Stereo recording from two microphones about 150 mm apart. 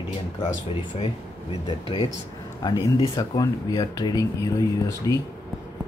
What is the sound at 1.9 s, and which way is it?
Speech, 35° left (ahead or behind).